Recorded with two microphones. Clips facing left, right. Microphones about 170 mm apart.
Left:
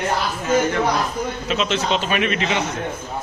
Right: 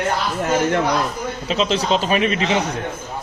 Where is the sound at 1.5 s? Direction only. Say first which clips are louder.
Right 3 dB; 35° right (ahead or behind).